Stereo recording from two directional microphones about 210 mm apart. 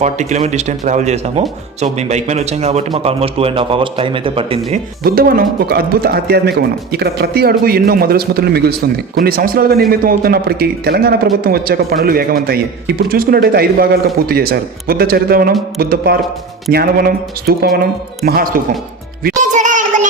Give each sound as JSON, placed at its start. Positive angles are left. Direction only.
{"t": 0.0, "sound": "speech", "side_deg": -35}
{"t": 5.0, "sound": "a man's voice", "side_deg": -45}
{"t": 19.4, "sound": "music", "side_deg": -35}